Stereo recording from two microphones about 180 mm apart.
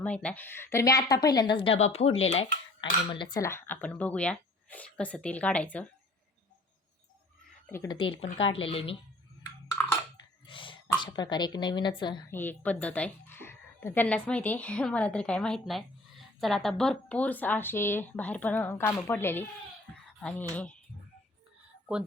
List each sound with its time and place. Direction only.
0.0 s a woman's voice: 5° left (ahead or behind); by 2.6 s 35° left (ahead or behind)
3.1 s a woman's voice: 25° left (ahead or behind); by 5.8 s 10° left (ahead or behind)
7.7 s a woman's voice: 15° left (ahead or behind)
7.9 s a woman's voice: 30° left (ahead or behind)
10.4 s speech: 30° left (ahead or behind)
12.3 s a woman's voice: 10° left (ahead or behind)